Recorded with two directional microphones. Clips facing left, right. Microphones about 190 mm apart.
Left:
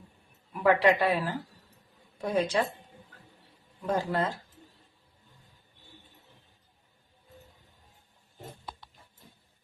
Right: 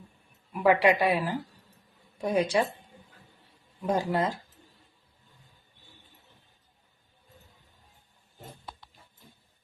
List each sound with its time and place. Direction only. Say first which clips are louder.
0.5 s speech: right 1 dB; 15° right (ahead or behind)
3.8 s speech: right 2 dB; 15° right (ahead or behind)